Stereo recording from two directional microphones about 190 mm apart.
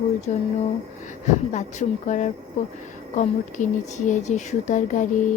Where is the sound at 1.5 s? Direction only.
40° left (ahead or behind).